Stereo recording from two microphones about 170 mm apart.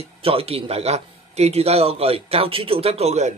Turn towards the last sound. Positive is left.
turn(degrees=-40)  # may be behind; listen again after turning